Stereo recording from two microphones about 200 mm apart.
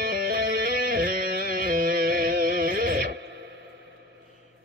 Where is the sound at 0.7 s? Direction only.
45° right (ahead or behind).